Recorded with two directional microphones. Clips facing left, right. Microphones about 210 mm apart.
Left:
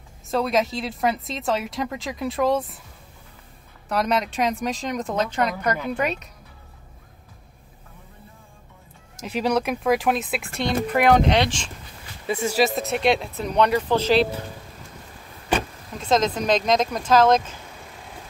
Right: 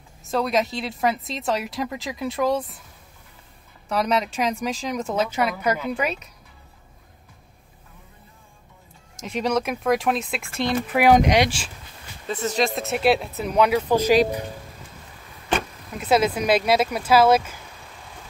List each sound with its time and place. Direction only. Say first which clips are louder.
0.3 s a woman's voice: left 1 dB; centre (ahead or behind)
3.9 s a woman's voice: even; centre (ahead or behind)
9.2 s a woman's voice: left 1 dB; centre (ahead or behind)
12.3 s a woman's voice: left 2 dB; 10° left (ahead or behind); by 14.4 s 10° right (ahead or behind)
16.0 s speech: right 1 dB; 10° right (ahead or behind)